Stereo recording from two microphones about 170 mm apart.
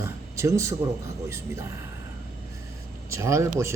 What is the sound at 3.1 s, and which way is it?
Speech, 15° right (ahead or behind).